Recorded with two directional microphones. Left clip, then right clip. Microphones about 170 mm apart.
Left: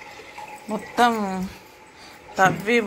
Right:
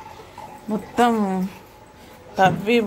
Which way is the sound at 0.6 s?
10° right (ahead or behind).